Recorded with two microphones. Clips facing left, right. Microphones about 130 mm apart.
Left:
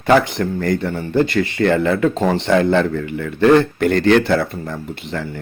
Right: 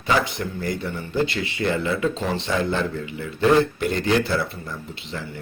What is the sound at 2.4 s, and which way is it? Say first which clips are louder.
Speech: left 9 dB; 65° left (ahead or behind).